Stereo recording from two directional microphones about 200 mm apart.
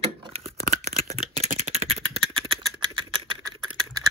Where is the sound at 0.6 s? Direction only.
35° right (ahead or behind).